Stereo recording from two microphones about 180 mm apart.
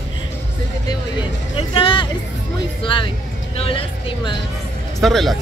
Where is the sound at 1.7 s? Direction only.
30° left (ahead or behind).